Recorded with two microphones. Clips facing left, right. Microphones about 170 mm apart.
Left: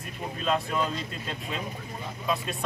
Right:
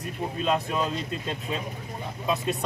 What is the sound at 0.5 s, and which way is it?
Speech, 20° right (ahead or behind).